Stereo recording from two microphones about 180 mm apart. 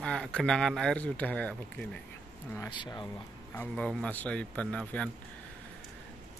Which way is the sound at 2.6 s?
25° left (ahead or behind).